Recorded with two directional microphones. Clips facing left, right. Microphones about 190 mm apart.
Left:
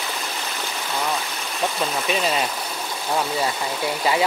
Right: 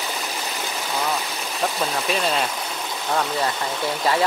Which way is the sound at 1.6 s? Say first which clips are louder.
Even; centre (ahead or behind).